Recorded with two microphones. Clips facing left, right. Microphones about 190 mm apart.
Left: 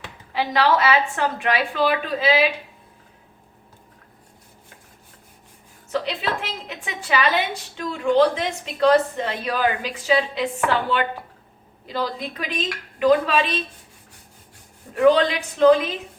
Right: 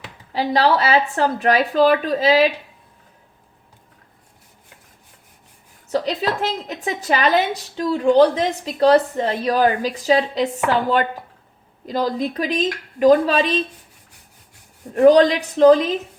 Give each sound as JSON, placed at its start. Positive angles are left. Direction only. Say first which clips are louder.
{"t": 0.3, "sound": "a woman's voice", "louder": "right 2 dB", "side_deg": -35}
{"t": 5.9, "sound": "a woman's voice", "louder": "right 4 dB", "side_deg": -40}
{"t": 14.9, "sound": "a woman's voice", "louder": "right 5 dB", "side_deg": -40}